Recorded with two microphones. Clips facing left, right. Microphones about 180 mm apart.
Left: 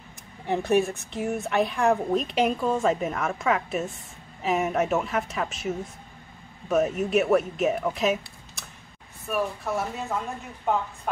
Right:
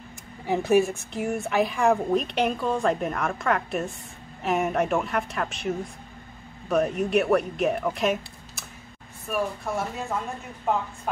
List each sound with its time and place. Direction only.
0.5 s speech: centre (ahead or behind)